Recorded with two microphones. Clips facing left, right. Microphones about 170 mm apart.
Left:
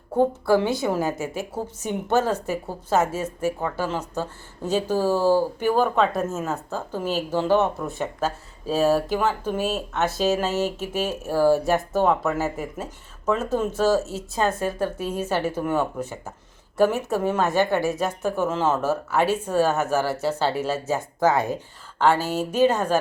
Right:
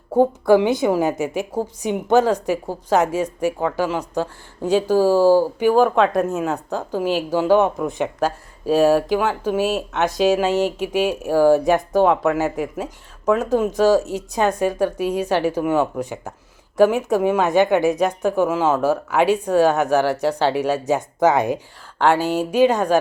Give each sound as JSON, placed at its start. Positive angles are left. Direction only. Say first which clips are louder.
{"t": 0.2, "sound": "speech", "louder": "right 5 dB", "side_deg": -15}